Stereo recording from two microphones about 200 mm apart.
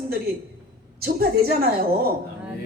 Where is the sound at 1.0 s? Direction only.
50° right (ahead or behind).